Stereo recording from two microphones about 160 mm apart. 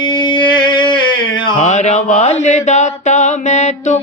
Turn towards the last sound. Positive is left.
turn(degrees=45)  # may be behind; listen again after turning